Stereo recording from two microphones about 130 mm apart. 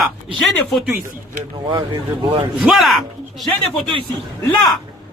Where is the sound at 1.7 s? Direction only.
40° right (ahead or behind).